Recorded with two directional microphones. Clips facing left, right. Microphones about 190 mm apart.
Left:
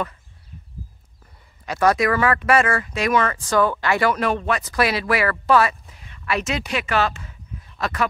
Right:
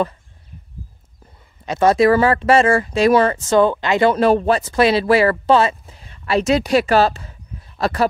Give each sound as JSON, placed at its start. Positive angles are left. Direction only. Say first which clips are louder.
{"t": 1.7, "sound": "speech", "louder": "right 5 dB", "side_deg": -25}